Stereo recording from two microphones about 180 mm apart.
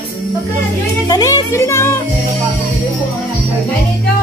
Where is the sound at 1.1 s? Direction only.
20° left (ahead or behind).